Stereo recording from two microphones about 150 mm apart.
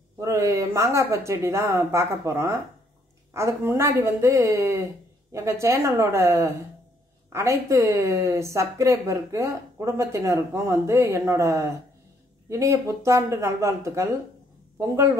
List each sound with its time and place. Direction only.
0.2 s speech: 20° right (ahead or behind)